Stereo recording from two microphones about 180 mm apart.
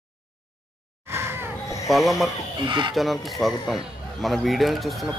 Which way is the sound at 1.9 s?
Centre (ahead or behind).